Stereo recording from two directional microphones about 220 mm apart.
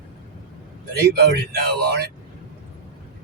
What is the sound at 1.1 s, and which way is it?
Speech, 45° right (ahead or behind).